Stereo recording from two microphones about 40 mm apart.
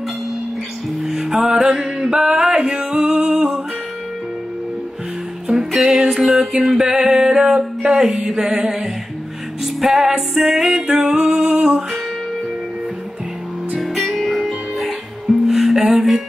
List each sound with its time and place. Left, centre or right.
1.0 s music: centre
5.5 s music: centre
6.2 s music: centre
13.9 s music: centre